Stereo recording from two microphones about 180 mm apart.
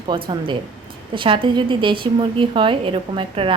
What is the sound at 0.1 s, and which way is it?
A woman's voice, 25° right (ahead or behind).